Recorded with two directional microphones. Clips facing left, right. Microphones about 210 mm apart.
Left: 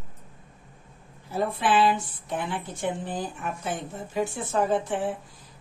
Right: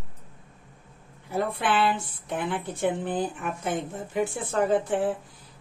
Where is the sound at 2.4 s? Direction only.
55° right (ahead or behind).